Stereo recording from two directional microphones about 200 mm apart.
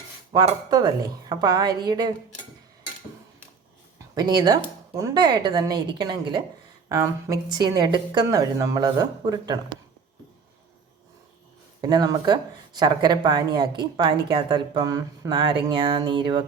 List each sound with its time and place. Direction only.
0.3 s speech: 20° right (ahead or behind)
4.1 s speech: 20° right (ahead or behind)
11.8 s speech: 20° right (ahead or behind)